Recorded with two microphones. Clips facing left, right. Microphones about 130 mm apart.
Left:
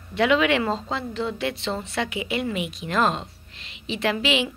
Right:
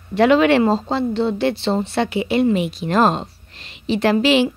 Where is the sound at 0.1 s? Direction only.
40° right (ahead or behind).